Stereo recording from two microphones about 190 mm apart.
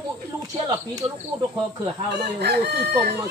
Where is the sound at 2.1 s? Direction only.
60° right (ahead or behind).